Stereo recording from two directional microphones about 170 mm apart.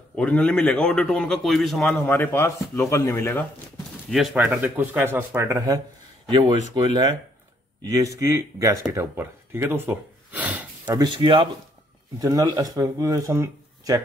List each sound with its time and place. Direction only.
0.1 s a man's voice: 5° left (ahead or behind)
4.1 s speech: centre (ahead or behind); by 5.8 s 15° right (ahead or behind)
6.2 s speech: 30° right (ahead or behind); by 10.7 s 10° right (ahead or behind)
10.9 s speech: 25° right (ahead or behind)